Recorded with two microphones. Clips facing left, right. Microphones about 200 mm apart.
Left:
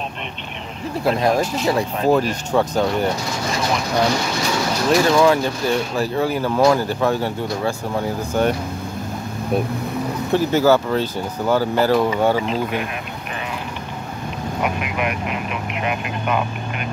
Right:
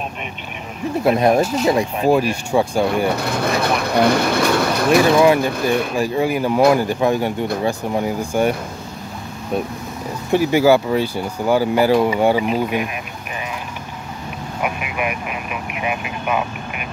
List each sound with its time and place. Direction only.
1.0 s speech: 20° right (ahead or behind)
3.2 s speech: 60° right (ahead or behind)
4.8 s speech: 15° right (ahead or behind)
10.3 s speech: 15° right (ahead or behind)
14.6 s speech: 10° right (ahead or behind)